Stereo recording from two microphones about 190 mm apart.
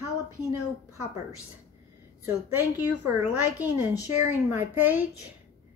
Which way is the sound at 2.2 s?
10° right (ahead or behind).